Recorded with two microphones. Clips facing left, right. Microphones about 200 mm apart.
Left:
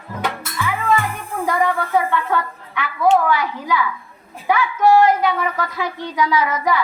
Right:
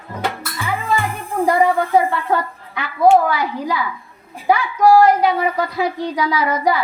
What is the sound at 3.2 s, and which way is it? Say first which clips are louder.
Speech: right 2 dB; 35° right (ahead or behind).